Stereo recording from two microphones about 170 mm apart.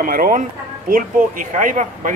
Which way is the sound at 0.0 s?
55° right (ahead or behind).